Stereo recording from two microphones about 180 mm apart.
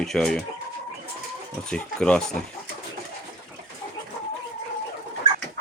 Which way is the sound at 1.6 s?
5° left (ahead or behind).